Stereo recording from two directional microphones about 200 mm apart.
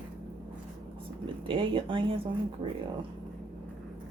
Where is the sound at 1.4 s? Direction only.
25° right (ahead or behind).